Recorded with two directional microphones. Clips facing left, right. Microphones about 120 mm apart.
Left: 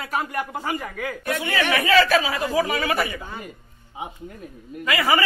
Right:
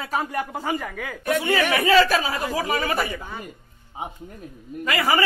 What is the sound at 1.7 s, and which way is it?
Speech, 35° right (ahead or behind).